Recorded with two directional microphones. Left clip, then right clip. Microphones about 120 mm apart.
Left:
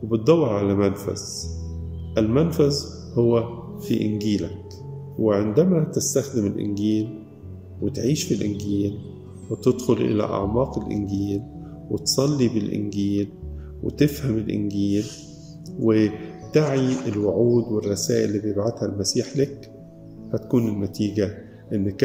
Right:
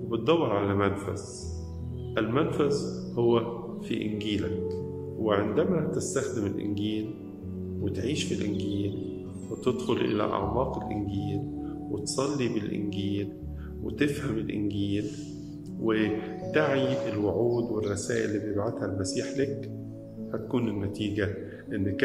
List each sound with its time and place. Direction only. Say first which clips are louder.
0.1 s speech: left 6 dB; 40° left (ahead or behind)
2.1 s speech: left 6 dB; 40° left (ahead or behind)